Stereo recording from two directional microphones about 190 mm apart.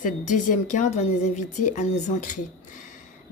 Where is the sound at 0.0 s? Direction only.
45° left (ahead or behind).